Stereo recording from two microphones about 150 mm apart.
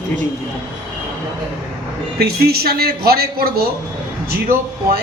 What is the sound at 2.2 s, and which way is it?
A man's voice, 90° right.